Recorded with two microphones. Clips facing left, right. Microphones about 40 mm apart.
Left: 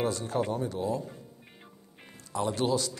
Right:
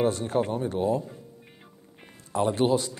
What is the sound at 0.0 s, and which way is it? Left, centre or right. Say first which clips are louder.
Speech: right 4 dB; right.